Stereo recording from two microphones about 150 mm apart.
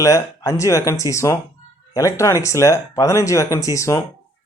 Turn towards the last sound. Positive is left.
turn(degrees=20)  # may be behind; listen again after turning